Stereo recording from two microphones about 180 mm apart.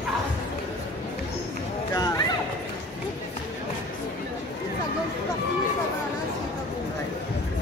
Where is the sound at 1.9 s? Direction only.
20° left (ahead or behind).